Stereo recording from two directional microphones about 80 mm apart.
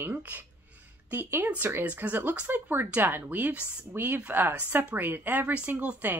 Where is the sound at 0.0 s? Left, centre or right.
Right.